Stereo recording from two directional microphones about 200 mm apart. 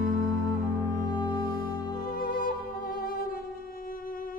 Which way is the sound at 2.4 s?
45° left (ahead or behind).